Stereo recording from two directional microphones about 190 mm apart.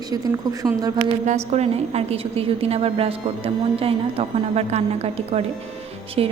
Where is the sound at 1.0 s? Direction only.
35° right (ahead or behind).